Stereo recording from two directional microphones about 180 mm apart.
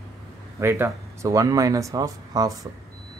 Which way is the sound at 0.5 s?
15° right (ahead or behind).